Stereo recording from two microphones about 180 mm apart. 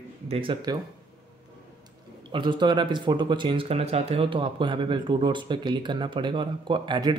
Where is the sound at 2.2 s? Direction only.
25° right (ahead or behind).